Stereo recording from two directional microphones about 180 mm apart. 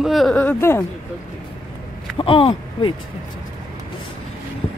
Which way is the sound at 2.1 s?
30° left (ahead or behind).